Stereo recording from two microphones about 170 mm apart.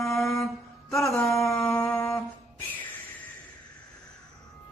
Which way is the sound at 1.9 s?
15° left (ahead or behind).